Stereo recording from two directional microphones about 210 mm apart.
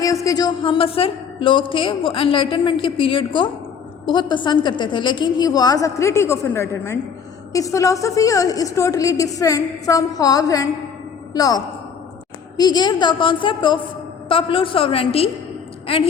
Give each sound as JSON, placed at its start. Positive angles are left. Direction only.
{"t": 0.0, "sound": "a woman's voice", "side_deg": 15}